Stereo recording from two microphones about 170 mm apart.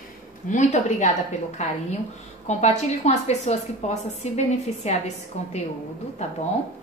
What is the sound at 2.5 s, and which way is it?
A woman's voice, 40° left (ahead or behind).